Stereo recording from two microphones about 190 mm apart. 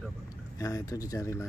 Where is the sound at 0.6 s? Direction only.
15° left (ahead or behind).